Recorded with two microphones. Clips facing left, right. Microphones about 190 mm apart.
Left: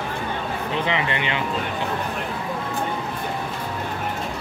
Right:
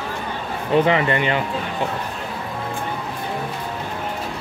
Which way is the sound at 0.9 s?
45° right (ahead or behind).